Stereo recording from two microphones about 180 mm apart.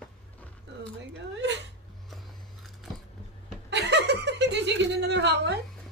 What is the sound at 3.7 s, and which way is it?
Chuckle, 70° right (ahead or behind).